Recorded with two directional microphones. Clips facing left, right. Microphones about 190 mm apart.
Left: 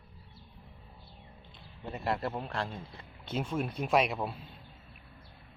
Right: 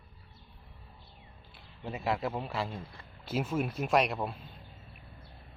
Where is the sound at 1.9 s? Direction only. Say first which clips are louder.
Right 1 dB; centre (ahead or behind).